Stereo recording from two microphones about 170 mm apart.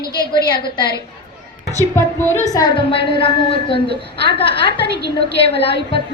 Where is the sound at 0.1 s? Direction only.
25° left (ahead or behind).